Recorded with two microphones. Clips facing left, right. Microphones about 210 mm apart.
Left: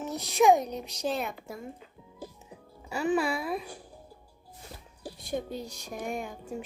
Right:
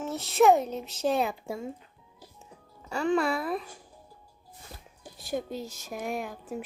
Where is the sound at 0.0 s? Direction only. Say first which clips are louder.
Right 1 dB; centre (ahead or behind).